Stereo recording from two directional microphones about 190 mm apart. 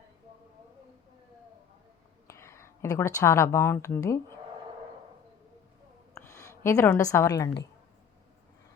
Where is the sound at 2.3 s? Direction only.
15° left (ahead or behind).